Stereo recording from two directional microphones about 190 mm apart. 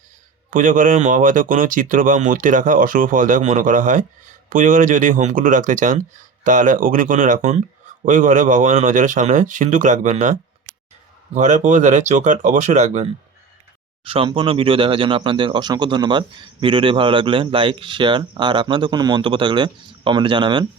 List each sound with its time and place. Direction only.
0.5 s speech: 45° right (ahead or behind); by 20.7 s 25° right (ahead or behind)